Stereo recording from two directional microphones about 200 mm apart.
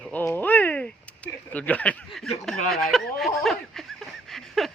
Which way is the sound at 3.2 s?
Centre (ahead or behind).